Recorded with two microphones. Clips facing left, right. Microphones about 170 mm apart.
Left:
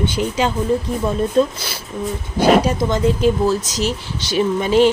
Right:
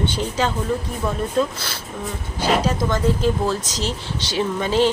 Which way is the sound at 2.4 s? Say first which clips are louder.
Left 6 dB; 15° left (ahead or behind).